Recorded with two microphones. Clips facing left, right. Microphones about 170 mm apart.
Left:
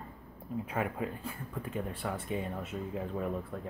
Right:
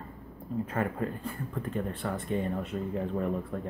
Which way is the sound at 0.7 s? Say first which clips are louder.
Right 2 dB; 5° left (ahead or behind).